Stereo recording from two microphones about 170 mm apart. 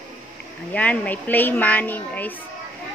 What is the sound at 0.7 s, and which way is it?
Speech, 10° left (ahead or behind).